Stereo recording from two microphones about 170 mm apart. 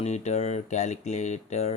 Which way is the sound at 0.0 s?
40° left (ahead or behind).